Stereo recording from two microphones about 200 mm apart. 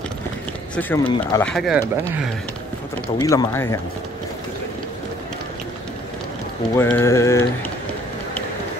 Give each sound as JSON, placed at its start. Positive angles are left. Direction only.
{"t": 0.7, "sound": "speech", "side_deg": 10}
{"t": 1.0, "sound": "speech", "side_deg": 20}
{"t": 1.4, "sound": "speech", "side_deg": 0}
{"t": 3.2, "sound": "speech", "side_deg": 20}
{"t": 6.8, "sound": "speech", "side_deg": 10}